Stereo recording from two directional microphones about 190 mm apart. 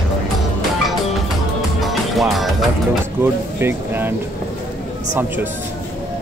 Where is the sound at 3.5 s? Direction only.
10° right (ahead or behind).